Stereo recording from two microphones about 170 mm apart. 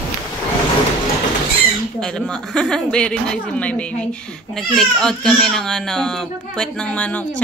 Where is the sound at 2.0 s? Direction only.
5° left (ahead or behind).